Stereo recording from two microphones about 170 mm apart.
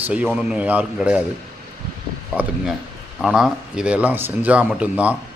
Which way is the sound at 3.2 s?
Centre (ahead or behind).